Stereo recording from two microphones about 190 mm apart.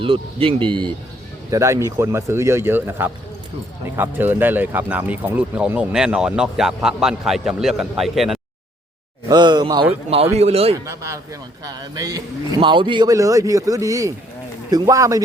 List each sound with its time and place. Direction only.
0.0 s a man's voice: 30° right (ahead or behind); by 8.4 s centre (ahead or behind)
9.3 s a man's voice: 20° right (ahead or behind)
10.3 s a man's voice: 30° right (ahead or behind)
10.8 s a man's voice: 15° right (ahead or behind)